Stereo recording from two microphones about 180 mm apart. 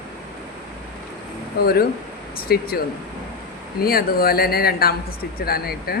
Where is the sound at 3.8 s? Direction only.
55° left (ahead or behind).